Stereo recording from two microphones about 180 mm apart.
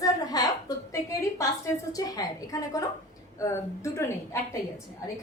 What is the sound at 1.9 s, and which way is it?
A woman's voice, 20° left (ahead or behind).